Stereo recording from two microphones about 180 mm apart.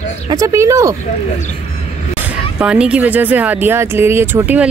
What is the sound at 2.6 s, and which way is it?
Speech, 5° right (ahead or behind).